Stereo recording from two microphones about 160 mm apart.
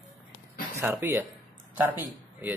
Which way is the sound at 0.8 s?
15° right (ahead or behind).